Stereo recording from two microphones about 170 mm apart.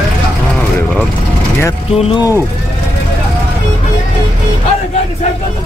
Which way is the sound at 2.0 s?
35° left (ahead or behind).